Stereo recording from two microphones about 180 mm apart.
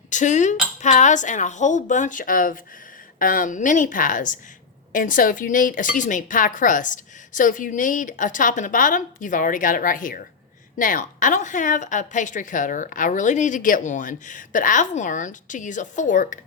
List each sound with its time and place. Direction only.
0.1 s a woman's voice: 45° left (ahead or behind)